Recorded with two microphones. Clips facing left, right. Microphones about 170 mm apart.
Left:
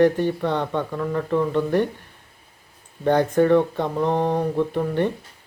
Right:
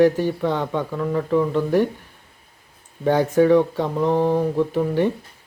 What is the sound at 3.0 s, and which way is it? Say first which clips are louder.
Speech: right 1 dB; 10° right (ahead or behind).